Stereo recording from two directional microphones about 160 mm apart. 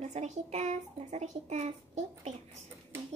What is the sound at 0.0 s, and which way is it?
A child's voice, 45° right (ahead or behind).